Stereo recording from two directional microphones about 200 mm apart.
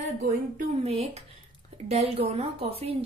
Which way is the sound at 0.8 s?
30° right (ahead or behind).